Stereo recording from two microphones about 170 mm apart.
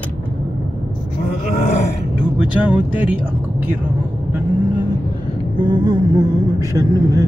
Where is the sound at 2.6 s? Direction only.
10° right (ahead or behind).